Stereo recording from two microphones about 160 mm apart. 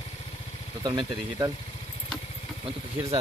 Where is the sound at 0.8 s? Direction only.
25° right (ahead or behind).